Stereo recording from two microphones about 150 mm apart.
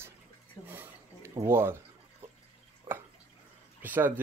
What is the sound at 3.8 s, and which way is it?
Speech, 10° right (ahead or behind).